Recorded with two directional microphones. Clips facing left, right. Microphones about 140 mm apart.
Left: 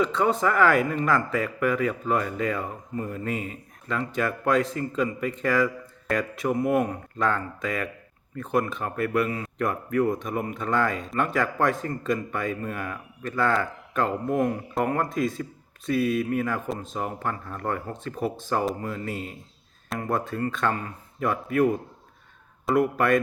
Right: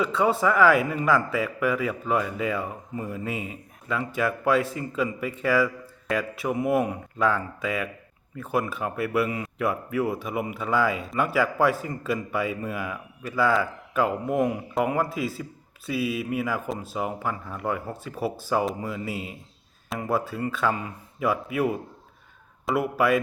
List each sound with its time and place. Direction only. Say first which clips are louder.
0.0 s a man's voice: even; 5° right (ahead or behind)